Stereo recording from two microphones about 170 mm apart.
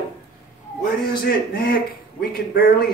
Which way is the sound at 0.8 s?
60° left (ahead or behind).